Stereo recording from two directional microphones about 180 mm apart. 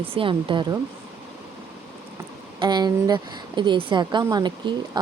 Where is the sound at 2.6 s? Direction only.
25° right (ahead or behind).